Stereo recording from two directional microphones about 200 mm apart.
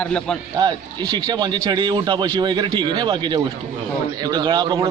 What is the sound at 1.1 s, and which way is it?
A man's voice, 20° right (ahead or behind).